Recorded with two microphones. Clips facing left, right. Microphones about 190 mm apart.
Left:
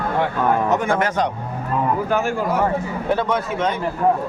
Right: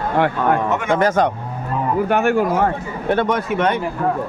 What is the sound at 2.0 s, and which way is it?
Speech, 65° right (ahead or behind).